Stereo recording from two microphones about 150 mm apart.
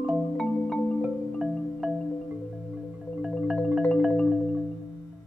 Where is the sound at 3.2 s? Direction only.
5° right (ahead or behind).